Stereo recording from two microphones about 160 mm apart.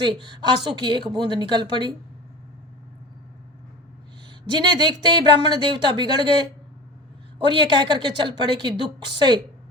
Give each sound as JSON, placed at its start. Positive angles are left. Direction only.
{"t": 0.0, "sound": "speech", "side_deg": -30}
{"t": 4.4, "sound": "speech", "side_deg": -30}